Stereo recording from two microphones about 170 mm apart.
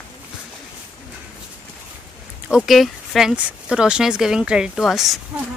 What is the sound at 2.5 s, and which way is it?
Speech, 5° right (ahead or behind).